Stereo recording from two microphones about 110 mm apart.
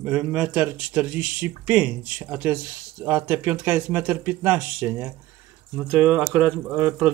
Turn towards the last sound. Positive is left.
turn(degrees=-15)  # may be behind; listen again after turning